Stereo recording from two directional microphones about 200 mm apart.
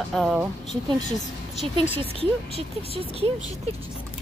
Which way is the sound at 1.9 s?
30° right (ahead or behind).